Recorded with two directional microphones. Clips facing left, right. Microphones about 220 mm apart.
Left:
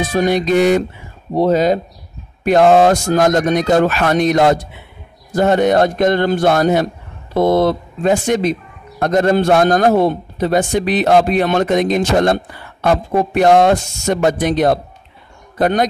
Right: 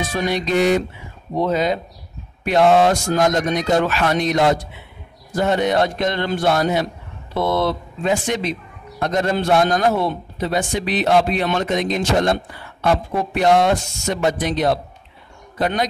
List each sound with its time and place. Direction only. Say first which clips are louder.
0.1 s a man's voice: left 7 dB; 45° left (ahead or behind)
1.3 s a man's voice: left 6 dB; 40° left (ahead or behind)